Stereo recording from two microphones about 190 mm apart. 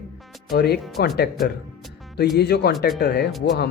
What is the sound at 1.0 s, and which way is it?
Speech, 55° left (ahead or behind).